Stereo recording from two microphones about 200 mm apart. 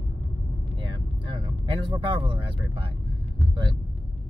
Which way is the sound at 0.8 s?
25° right (ahead or behind).